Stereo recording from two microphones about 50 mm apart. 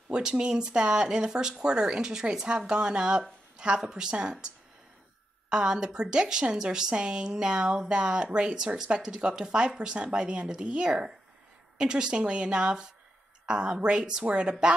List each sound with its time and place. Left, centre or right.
0.1 s a woman's voice: centre
5.5 s a woman's voice: centre